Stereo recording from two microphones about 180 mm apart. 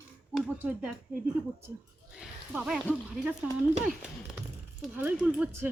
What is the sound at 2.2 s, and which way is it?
Speech, 5° right (ahead or behind).